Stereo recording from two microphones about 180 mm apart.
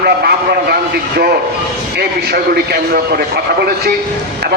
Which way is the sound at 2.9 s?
60° right (ahead or behind).